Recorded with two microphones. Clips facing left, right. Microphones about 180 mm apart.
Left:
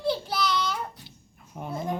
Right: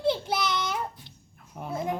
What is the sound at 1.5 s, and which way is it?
Speech, centre (ahead or behind).